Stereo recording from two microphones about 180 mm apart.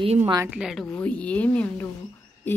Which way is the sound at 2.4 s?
10° left (ahead or behind).